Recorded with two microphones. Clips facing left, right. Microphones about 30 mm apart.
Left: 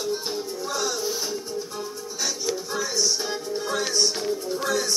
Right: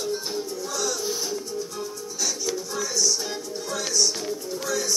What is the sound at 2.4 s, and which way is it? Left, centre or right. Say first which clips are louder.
Music: left 1 dB; left.